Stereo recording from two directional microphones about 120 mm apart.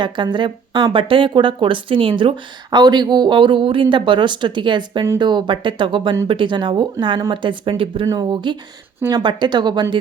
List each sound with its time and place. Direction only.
0.0 s speech: 40° right (ahead or behind)